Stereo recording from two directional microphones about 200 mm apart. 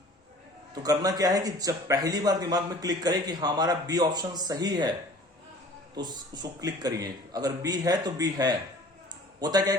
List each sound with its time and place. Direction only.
0.7 s a man's voice: 20° right (ahead or behind)